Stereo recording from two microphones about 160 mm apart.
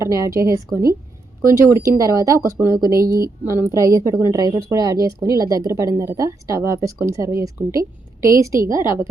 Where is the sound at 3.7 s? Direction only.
20° right (ahead or behind).